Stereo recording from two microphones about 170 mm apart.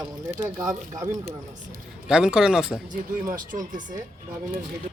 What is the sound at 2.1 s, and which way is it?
Speech, 5° right (ahead or behind).